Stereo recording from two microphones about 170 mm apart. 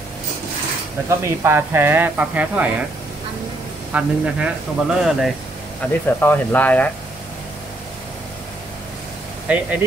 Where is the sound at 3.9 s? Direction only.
5° right (ahead or behind).